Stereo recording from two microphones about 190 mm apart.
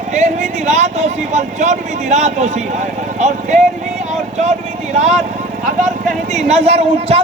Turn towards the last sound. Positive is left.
turn(degrees=-30)  # may be behind; listen again after turning